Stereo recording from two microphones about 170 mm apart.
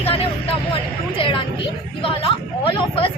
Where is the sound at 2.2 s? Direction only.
30° left (ahead or behind).